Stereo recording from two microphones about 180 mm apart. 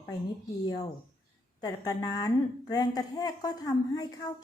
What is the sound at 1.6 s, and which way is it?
A woman's voice, 20° left (ahead or behind).